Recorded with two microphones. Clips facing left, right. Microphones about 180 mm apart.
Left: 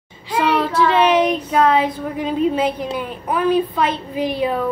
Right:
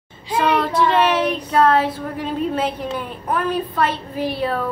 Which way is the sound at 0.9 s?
10° left (ahead or behind).